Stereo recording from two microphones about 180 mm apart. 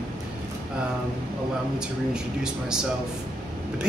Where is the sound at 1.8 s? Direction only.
5° right (ahead or behind).